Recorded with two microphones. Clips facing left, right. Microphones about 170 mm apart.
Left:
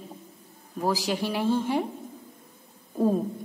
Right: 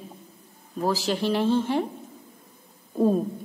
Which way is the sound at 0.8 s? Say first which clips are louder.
Right 2 dB; 10° left (ahead or behind).